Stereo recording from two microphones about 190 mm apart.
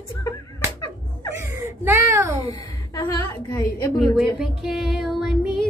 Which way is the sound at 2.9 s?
15° left (ahead or behind).